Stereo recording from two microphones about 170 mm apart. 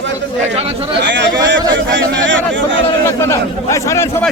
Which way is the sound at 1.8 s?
90° right.